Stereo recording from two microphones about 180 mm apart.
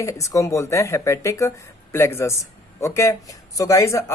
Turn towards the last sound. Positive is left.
turn(degrees=15)  # may be behind; listen again after turning